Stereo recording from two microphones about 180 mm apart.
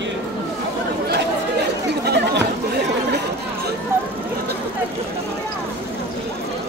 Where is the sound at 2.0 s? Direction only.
70° right (ahead or behind).